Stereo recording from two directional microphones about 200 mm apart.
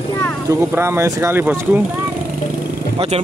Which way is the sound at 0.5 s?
10° right (ahead or behind).